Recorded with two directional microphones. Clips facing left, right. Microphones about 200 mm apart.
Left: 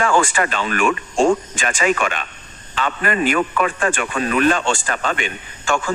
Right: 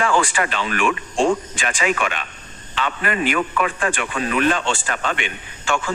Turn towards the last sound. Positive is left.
turn(degrees=45)  # may be behind; listen again after turning